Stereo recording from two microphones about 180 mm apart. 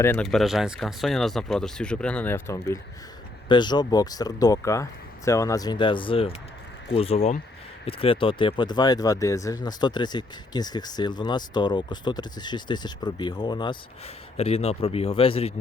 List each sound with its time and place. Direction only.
0.0 s speech: 10° left (ahead or behind)
0.3 s speech: centre (ahead or behind)
3.5 s speech: 25° left (ahead or behind)